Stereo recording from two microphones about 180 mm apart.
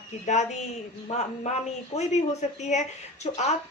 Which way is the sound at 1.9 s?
40° left (ahead or behind).